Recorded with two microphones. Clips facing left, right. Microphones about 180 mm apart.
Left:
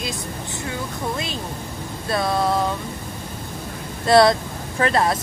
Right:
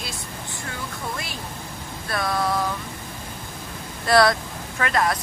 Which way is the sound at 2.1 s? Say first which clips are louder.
Left 4 dB; 25° left (ahead or behind).